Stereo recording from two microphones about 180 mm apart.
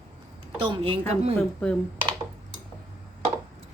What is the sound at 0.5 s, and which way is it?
Speech, 30° right (ahead or behind).